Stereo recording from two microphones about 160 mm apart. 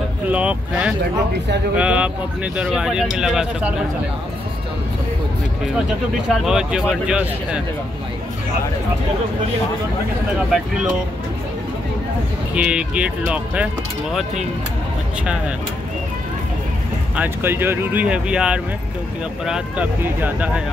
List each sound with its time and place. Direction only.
0.3 s speech: 10° right (ahead or behind)
5.9 s speech: 5° right (ahead or behind)
12.5 s speech: 5° right (ahead or behind)
17.1 s speech: 10° right (ahead or behind)